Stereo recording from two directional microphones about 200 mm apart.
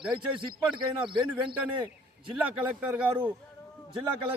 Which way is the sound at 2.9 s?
10° right (ahead or behind).